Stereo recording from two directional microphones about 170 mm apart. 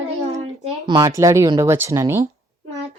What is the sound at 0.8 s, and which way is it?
Speech, 25° right (ahead or behind).